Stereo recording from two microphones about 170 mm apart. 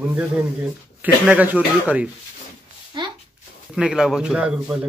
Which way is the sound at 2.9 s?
25° right (ahead or behind).